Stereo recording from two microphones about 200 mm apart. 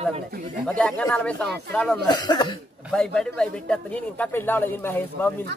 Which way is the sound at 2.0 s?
20° left (ahead or behind).